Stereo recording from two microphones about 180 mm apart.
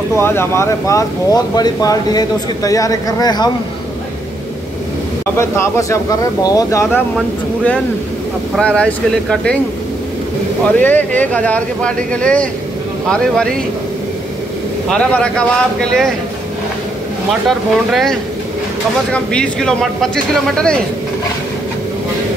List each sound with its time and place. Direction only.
0.1 s speech: 15° left (ahead or behind)
5.4 s speech: 15° left (ahead or behind)
7.2 s a man's voice: 5° left (ahead or behind)
10.8 s speech: 10° left (ahead or behind)
14.9 s a man's voice: 5° left (ahead or behind)
17.3 s a man's voice: centre (ahead or behind)
19.1 s a man's voice: 5° left (ahead or behind)